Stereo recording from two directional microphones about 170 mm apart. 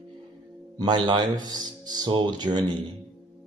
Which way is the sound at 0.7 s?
25° right (ahead or behind).